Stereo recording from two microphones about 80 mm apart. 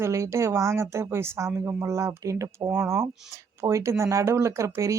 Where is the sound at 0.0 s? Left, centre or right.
Right.